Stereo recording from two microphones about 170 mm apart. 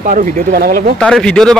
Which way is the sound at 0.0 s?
50° right (ahead or behind).